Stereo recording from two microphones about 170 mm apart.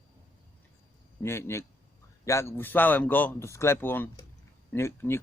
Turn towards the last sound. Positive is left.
turn(degrees=15)  # may be behind; listen again after turning